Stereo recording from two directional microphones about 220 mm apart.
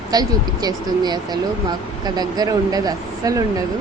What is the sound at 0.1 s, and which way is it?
Speech, 20° right (ahead or behind).